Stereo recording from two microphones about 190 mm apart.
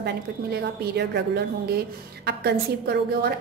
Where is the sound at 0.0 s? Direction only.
60° right (ahead or behind).